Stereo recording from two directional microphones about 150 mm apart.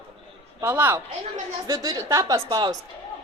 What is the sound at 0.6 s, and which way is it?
A woman's voice, 15° right (ahead or behind).